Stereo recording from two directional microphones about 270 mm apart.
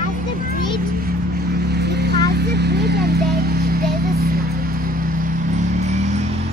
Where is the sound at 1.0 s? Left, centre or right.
Right.